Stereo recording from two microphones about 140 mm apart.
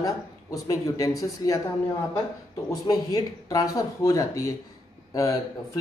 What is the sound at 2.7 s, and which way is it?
A man's voice, 25° left (ahead or behind).